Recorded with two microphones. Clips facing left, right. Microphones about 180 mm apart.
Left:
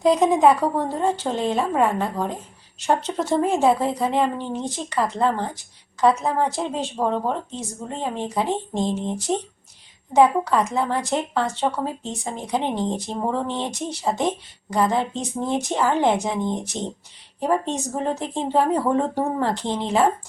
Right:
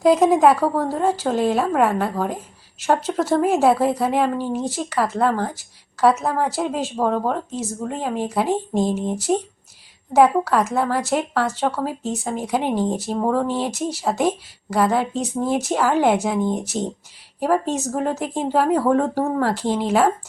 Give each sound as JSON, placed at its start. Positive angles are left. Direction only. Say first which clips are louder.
{"t": 0.0, "sound": "a woman's voice", "louder": "right 2 dB", "side_deg": -5}